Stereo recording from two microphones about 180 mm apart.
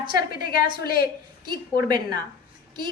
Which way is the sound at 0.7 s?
55° left (ahead or behind).